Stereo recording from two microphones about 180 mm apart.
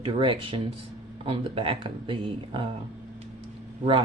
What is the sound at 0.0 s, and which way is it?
Speech, 30° right (ahead or behind).